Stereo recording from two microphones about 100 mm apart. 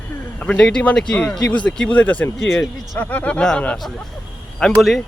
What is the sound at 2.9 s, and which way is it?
A man's voice, 15° left (ahead or behind).